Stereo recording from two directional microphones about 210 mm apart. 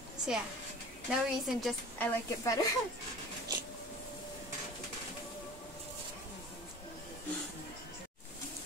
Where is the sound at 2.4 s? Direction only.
15° left (ahead or behind).